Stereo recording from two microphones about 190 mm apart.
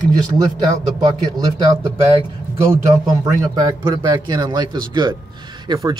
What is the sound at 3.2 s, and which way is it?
Speech, 20° right (ahead or behind).